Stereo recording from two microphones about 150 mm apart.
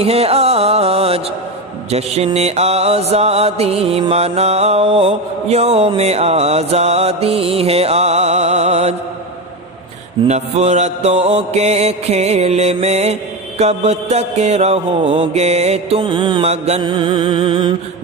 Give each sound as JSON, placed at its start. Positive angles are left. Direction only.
{"t": 0.0, "sound": "music", "side_deg": -40}
{"t": 10.2, "sound": "music", "side_deg": -45}
{"t": 16.4, "sound": "music", "side_deg": -45}
{"t": 16.8, "sound": "music", "side_deg": -35}